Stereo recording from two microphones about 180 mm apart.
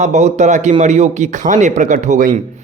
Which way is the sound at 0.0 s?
40° right (ahead or behind).